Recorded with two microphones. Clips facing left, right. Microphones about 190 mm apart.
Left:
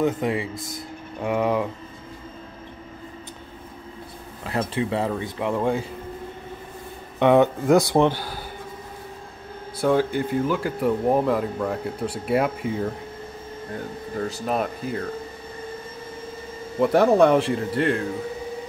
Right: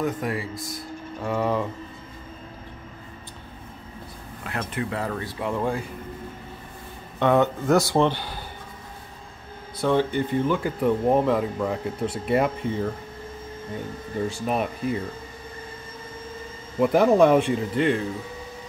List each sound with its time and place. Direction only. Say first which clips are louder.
0.0 s speech: left 4 dB; 20° left (ahead or behind)
4.5 s speech: left 5 dB; 30° left (ahead or behind)
7.2 s speech: left 3 dB; 15° left (ahead or behind)
9.8 s speech: left 1 dB; 10° left (ahead or behind)
14.5 s speech: even; 5° right (ahead or behind)
16.8 s speech: left 1 dB; 5° right (ahead or behind)